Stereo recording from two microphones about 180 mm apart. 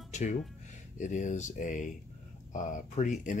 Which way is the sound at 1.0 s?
45° left (ahead or behind).